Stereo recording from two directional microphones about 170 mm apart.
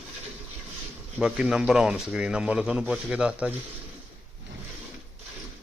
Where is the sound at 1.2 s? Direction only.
5° right (ahead or behind).